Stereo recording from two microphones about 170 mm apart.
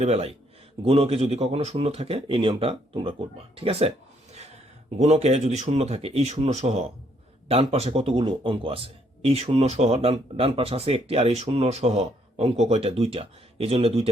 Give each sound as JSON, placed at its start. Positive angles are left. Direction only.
{"t": 0.0, "sound": "a man's voice", "side_deg": -35}